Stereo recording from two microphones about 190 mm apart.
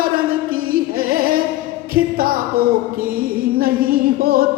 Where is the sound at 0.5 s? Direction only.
50° right (ahead or behind).